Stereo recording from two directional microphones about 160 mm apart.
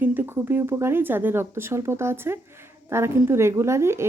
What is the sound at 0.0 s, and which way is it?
A child's voice, 10° right (ahead or behind).